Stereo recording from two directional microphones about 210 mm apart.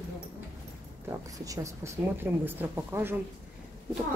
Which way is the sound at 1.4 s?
15° right (ahead or behind).